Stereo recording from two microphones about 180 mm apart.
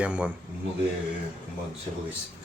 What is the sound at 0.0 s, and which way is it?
Speech, 5° right (ahead or behind).